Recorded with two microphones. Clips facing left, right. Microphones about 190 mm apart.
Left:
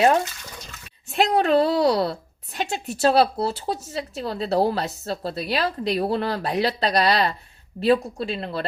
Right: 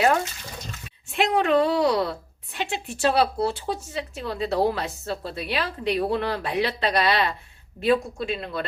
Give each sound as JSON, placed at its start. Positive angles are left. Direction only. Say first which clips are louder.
{"t": 1.1, "sound": "a woman's voice", "louder": "left 2 dB", "side_deg": 40}